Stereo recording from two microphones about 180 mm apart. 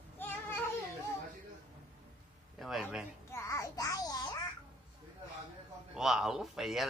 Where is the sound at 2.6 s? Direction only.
Centre (ahead or behind).